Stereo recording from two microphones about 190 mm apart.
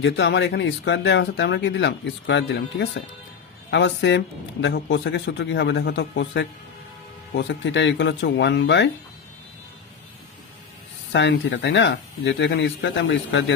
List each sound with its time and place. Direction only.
0.0 s speech: 70° left (ahead or behind)
11.1 s speech: 65° left (ahead or behind)